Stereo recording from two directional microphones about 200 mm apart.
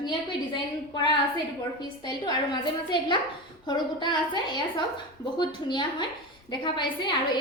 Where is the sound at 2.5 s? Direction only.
25° left (ahead or behind).